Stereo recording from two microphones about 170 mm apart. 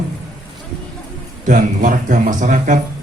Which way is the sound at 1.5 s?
50° right (ahead or behind).